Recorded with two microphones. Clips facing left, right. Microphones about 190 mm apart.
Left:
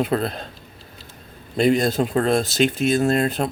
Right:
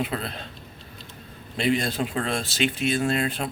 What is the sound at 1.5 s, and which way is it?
Speech, 40° left (ahead or behind).